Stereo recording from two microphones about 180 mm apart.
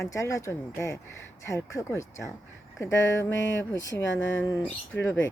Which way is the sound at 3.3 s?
90° left.